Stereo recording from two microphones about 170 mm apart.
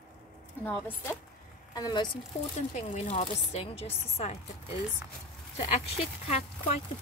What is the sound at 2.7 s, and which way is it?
Speech, 35° left (ahead or behind).